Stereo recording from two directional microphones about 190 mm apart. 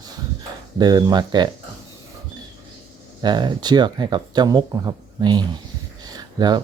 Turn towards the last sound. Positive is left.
turn(degrees=-20)  # may be behind; listen again after turning